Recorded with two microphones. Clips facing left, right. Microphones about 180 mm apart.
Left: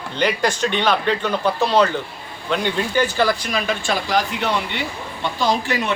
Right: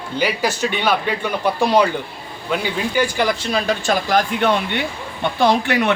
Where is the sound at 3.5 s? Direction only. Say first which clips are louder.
Right 3 dB; 35° right (ahead or behind).